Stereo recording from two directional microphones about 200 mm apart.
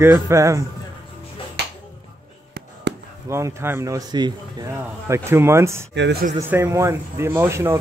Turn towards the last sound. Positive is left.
turn(degrees=-15)  # may be behind; listen again after turning